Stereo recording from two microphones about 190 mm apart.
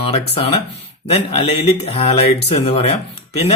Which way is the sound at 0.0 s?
30° left (ahead or behind).